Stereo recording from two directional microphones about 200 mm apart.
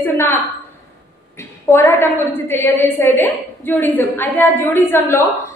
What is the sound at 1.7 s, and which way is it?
A woman's voice, 15° left (ahead or behind).